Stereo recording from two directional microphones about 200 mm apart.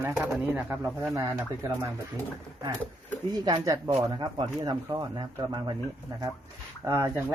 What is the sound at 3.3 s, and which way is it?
Speech, 20° right (ahead or behind).